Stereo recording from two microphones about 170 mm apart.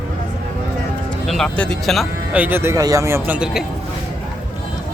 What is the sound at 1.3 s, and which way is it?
Speech, 5° left (ahead or behind).